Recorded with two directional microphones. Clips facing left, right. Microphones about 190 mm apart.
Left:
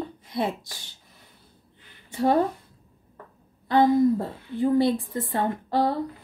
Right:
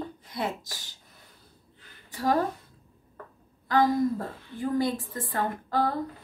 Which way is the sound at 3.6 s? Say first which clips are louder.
Left 5 dB; 25° left (ahead or behind).